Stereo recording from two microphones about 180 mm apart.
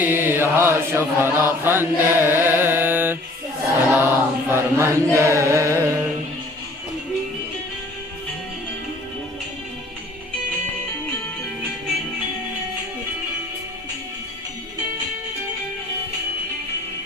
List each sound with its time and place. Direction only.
0.0 s mantra: 10° right (ahead or behind)